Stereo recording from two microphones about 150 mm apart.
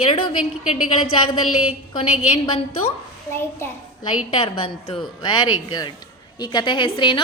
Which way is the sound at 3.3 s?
15° left (ahead or behind).